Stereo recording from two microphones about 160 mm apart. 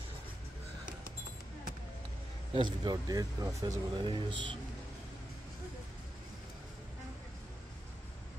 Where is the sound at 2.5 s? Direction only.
30° right (ahead or behind).